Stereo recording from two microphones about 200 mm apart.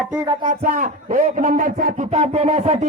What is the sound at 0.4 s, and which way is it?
A man's voice, 40° right (ahead or behind).